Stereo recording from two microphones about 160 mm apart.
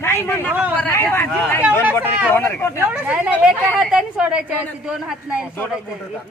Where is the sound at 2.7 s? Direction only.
10° right (ahead or behind).